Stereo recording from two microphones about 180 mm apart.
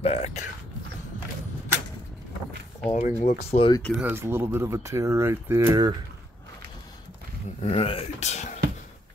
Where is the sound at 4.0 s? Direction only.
10° right (ahead or behind).